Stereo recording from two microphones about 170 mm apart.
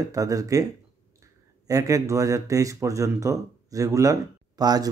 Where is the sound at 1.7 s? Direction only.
20° right (ahead or behind).